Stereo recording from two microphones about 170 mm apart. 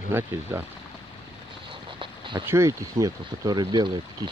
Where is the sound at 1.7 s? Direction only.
30° right (ahead or behind).